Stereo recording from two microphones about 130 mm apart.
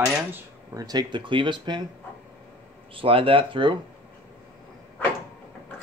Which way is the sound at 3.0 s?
45° right (ahead or behind).